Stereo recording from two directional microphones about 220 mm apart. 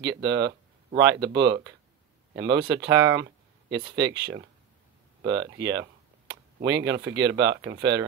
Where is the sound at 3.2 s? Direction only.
50° right (ahead or behind).